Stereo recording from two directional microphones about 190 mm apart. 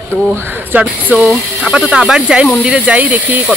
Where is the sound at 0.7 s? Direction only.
5° right (ahead or behind).